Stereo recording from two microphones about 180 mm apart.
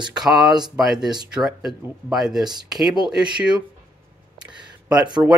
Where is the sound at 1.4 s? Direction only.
Centre (ahead or behind).